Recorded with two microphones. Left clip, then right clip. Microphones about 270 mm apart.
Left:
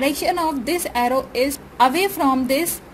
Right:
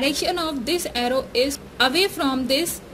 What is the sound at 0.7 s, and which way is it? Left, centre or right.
A woman's voice, centre.